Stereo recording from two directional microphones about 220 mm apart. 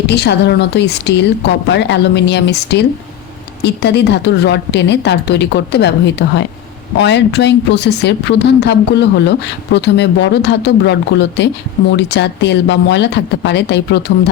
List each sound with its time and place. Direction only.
0.1 s a woman's voice: 50° left (ahead or behind)